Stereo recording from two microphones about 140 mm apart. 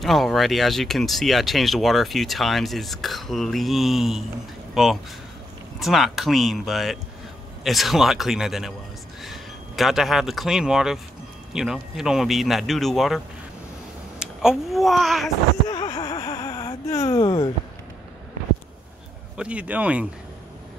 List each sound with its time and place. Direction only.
0.0 s speech: centre (ahead or behind)
14.2 s a child's voice: 5° right (ahead or behind)
15.7 s a sound: 30° left (ahead or behind)
19.3 s speech: 10° right (ahead or behind)